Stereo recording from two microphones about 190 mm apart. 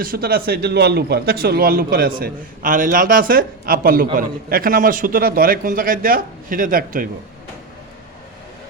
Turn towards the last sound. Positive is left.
turn(degrees=-45)  # may be behind; listen again after turning